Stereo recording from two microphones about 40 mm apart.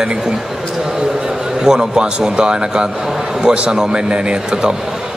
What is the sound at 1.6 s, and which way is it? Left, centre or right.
A man's voice, centre.